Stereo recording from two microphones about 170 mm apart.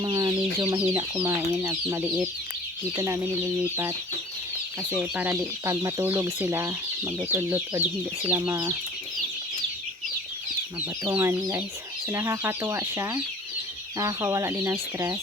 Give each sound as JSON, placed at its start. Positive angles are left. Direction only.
{"t": 0.0, "sound": "speech", "side_deg": -20}
{"t": 0.8, "sound": "speech", "side_deg": -10}
{"t": 4.9, "sound": "speech", "side_deg": -10}
{"t": 11.1, "sound": "speech", "side_deg": -15}